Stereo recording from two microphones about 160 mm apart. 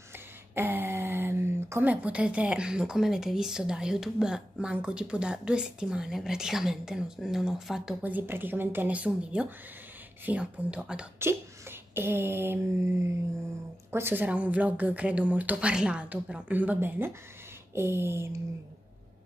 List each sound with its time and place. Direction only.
0.6 s speech: 15° right (ahead or behind)